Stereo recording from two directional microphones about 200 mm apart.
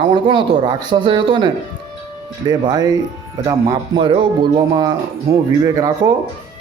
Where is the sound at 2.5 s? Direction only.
20° right (ahead or behind).